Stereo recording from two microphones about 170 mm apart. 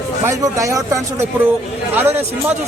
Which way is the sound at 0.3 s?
20° right (ahead or behind).